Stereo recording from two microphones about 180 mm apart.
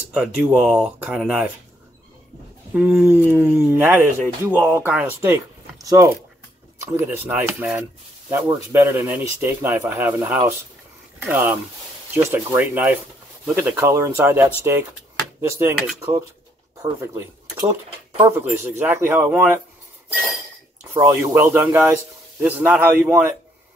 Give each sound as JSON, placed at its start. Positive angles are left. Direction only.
{"t": 0.1, "sound": "speech", "side_deg": -10}
{"t": 2.7, "sound": "speech", "side_deg": -5}
{"t": 16.8, "sound": "speech", "side_deg": -15}
{"t": 20.9, "sound": "speech", "side_deg": -10}